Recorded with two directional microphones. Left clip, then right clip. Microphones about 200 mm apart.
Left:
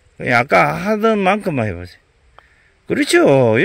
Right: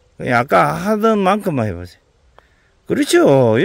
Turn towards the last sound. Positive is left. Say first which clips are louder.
# even
turn(degrees=-5)  # may be behind; listen again after turning